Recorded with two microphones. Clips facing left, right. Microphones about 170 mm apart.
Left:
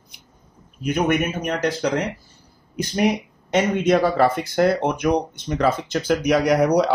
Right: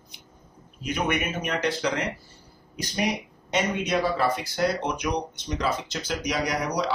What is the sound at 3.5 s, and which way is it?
Speech, 50° left (ahead or behind).